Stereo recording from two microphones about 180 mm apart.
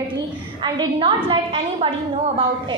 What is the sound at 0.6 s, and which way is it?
A woman's voice, 25° right (ahead or behind).